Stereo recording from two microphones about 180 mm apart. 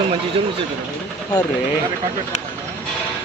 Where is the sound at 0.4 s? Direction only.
30° right (ahead or behind).